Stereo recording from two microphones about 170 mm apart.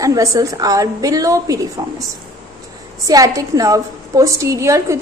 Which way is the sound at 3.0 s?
20° right (ahead or behind).